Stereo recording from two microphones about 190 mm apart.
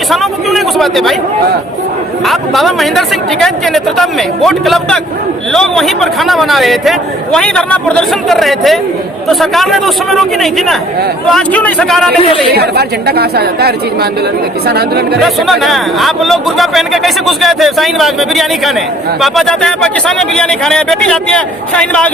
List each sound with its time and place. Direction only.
0.1 s a sound: centre (ahead or behind)
2.2 s speech: centre (ahead or behind)
12.5 s a woman's voice: 55° right (ahead or behind)
15.2 s speech: centre (ahead or behind)